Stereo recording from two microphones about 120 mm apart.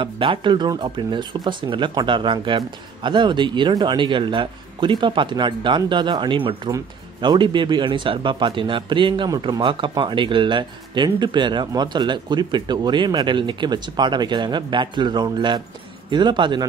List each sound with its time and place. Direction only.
0.0 s a man's voice: 45° right (ahead or behind)